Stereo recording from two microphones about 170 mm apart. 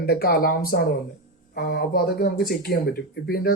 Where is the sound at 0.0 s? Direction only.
60° left (ahead or behind).